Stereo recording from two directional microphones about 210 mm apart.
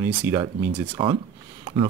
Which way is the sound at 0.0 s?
15° right (ahead or behind).